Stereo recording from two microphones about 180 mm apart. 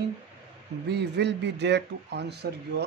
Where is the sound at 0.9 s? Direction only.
70° right (ahead or behind).